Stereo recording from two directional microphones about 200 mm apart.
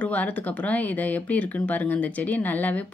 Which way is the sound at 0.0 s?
5° left (ahead or behind).